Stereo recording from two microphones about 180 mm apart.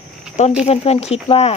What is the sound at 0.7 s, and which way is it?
Speech, 35° left (ahead or behind).